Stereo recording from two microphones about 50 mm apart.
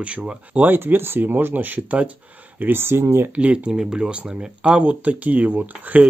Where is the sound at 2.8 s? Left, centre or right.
Right.